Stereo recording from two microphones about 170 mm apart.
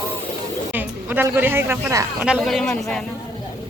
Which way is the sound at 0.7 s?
10° right (ahead or behind).